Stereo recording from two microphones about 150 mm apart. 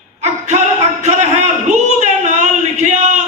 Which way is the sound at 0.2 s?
50° right (ahead or behind).